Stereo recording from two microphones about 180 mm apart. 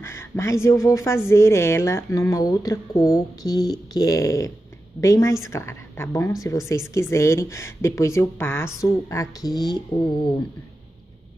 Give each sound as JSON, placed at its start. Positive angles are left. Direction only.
{"t": 0.0, "sound": "speech", "side_deg": 15}